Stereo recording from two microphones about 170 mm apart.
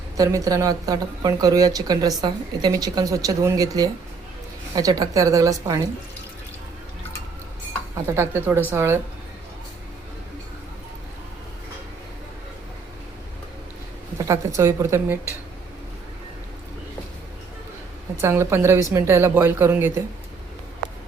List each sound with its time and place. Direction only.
0.2 s speech: 20° right (ahead or behind)
8.0 s a woman's voice: 15° right (ahead or behind)
14.2 s a woman's voice: 20° right (ahead or behind)
18.2 s a woman's voice: 15° right (ahead or behind)